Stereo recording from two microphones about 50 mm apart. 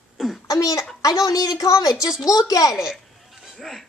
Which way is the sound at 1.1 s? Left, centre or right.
Left.